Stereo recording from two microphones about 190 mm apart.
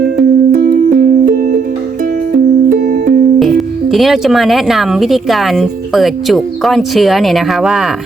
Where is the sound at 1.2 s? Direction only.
45° right (ahead or behind).